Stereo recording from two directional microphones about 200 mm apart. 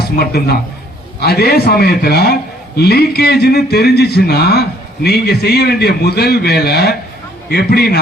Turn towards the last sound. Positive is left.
turn(degrees=55)  # may be behind; listen again after turning